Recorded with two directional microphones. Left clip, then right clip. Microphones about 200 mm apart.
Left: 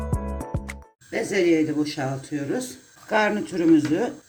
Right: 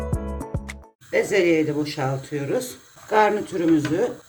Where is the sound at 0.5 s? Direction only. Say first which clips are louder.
Even; centre (ahead or behind).